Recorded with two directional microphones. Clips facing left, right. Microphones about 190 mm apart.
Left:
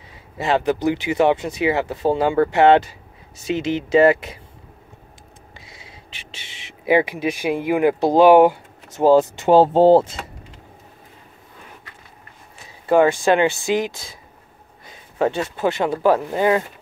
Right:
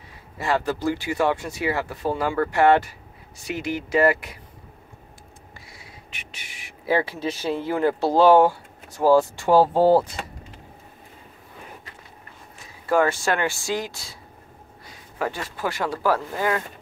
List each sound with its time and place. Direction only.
0.4 s speech: 20° left (ahead or behind)
5.7 s speech: 25° left (ahead or behind)
12.8 s speech: 20° left (ahead or behind)